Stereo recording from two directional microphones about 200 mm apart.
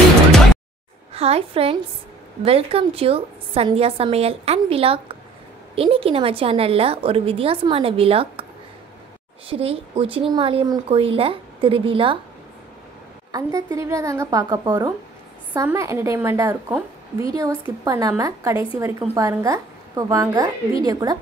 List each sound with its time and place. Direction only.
1.1 s a woman's voice: 30° right (ahead or behind)
9.5 s a woman's voice: 30° right (ahead or behind)
13.3 s a woman's voice: 15° right (ahead or behind)